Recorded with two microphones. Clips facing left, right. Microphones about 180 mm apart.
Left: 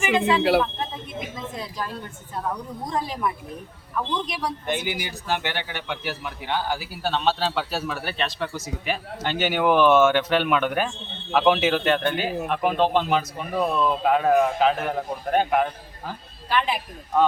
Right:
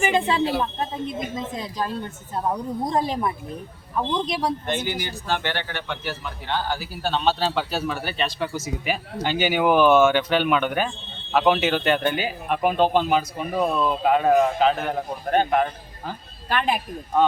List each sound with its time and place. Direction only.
0.1 s speech: 35° right (ahead or behind)
2.3 s speech: 25° right (ahead or behind)
4.6 s a man's voice: 10° left (ahead or behind)
16.5 s speech: 50° right (ahead or behind)